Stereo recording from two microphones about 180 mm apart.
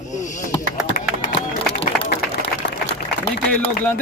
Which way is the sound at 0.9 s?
60° left (ahead or behind).